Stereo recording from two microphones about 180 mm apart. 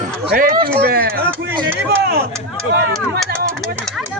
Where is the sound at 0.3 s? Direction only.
55° right (ahead or behind).